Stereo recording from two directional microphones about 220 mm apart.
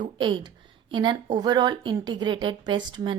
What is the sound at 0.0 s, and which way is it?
A woman's voice, 20° right (ahead or behind).